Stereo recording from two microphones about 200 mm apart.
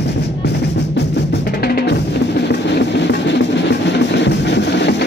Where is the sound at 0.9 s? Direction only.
55° left (ahead or behind).